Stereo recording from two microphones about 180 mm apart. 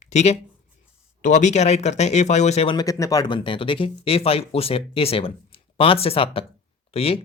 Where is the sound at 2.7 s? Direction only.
20° left (ahead or behind).